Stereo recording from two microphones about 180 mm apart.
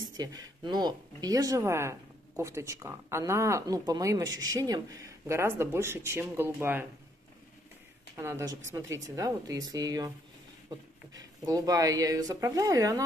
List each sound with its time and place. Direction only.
0.2 s speech: 20° right (ahead or behind)
8.2 s speech: 15° right (ahead or behind)